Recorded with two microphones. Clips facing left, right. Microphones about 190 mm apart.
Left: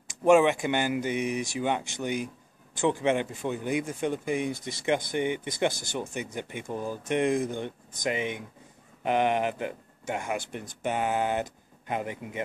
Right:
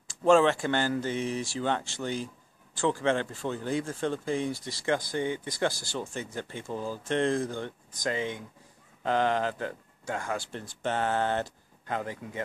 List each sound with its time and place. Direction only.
0.1 s speech: 15° left (ahead or behind)